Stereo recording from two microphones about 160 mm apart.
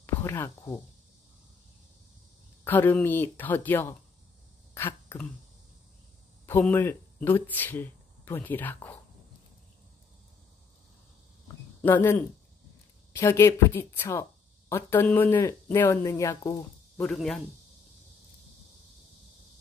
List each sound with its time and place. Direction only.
0.0 s speech: 15° left (ahead or behind)
2.6 s speech: 10° left (ahead or behind)
6.7 s speech: 15° left (ahead or behind)
11.8 s speech: 10° left (ahead or behind)